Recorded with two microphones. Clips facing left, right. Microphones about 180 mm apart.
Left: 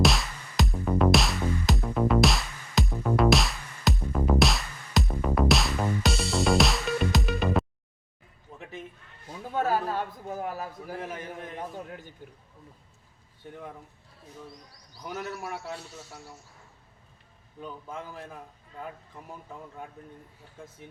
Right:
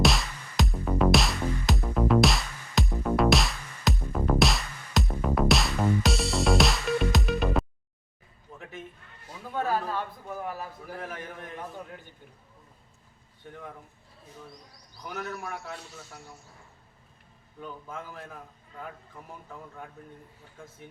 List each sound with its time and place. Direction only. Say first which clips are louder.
0.0 s music: even; centre (ahead or behind)
8.5 s a sound: left 1 dB; centre (ahead or behind)
9.6 s a sound: left 2 dB; 40° left (ahead or behind)
11.0 s a man's voice: left 2 dB; 20° left (ahead or behind)
15.0 s a man's voice: left 1 dB; 20° left (ahead or behind)
17.8 s a man's voice: left 1 dB; 15° left (ahead or behind)